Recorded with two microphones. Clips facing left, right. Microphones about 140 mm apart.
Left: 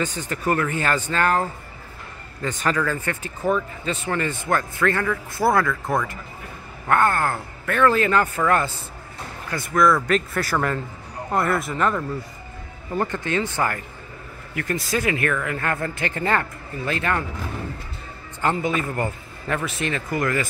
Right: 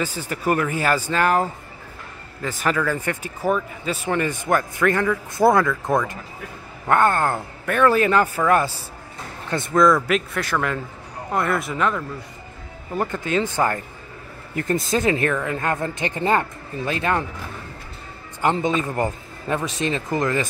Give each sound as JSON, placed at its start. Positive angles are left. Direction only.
{"t": 0.0, "sound": "speech", "side_deg": -10}
{"t": 6.9, "sound": "speech", "side_deg": -20}
{"t": 9.5, "sound": "speech", "side_deg": -20}
{"t": 12.9, "sound": "speech", "side_deg": -10}
{"t": 14.6, "sound": "speech", "side_deg": -25}
{"t": 18.4, "sound": "speech", "side_deg": -20}